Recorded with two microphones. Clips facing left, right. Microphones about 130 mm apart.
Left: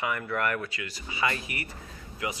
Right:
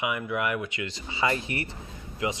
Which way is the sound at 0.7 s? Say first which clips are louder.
Right 3 dB; 25° right (ahead or behind).